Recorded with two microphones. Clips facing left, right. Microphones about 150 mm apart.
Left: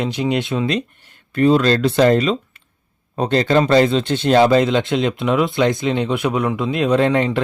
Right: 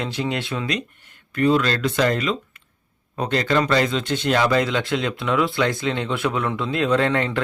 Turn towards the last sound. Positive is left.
turn(degrees=20)  # may be behind; listen again after turning